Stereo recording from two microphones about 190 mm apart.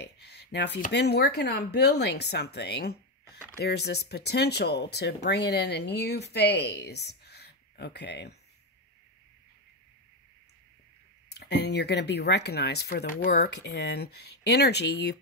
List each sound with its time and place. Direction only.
0.0 s a sound: 60° left (ahead or behind)
0.7 s speech: 55° left (ahead or behind)
11.2 s speech: 60° left (ahead or behind)